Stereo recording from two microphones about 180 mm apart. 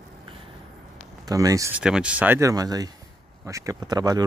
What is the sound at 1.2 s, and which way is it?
Speech, 20° right (ahead or behind).